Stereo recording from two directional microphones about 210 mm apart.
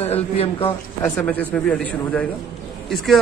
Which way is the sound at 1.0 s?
5° left (ahead or behind).